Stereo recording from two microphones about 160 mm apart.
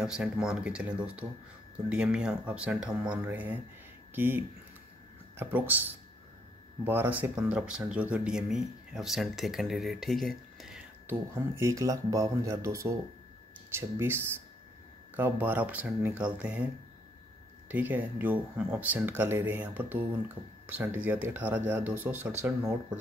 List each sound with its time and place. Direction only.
0.0 s speech: 5° right (ahead or behind)
11.1 s speech: 15° right (ahead or behind)
17.6 s speech: 10° right (ahead or behind)